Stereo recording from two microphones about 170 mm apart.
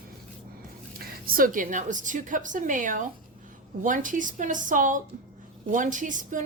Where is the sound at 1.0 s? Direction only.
60° right (ahead or behind).